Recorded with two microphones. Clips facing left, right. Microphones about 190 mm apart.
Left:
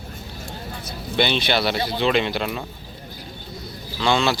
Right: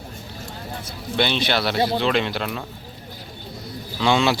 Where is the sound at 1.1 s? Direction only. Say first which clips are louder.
Left 1 dB; 5° left (ahead or behind).